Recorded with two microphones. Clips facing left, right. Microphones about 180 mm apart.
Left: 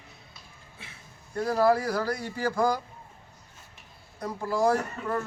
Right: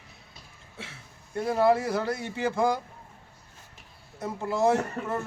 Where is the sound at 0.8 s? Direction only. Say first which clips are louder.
Right 7 dB; 90° right.